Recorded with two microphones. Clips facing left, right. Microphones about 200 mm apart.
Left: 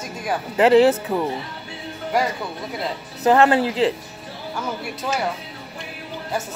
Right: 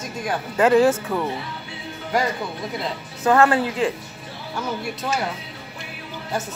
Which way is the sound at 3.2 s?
20° left (ahead or behind).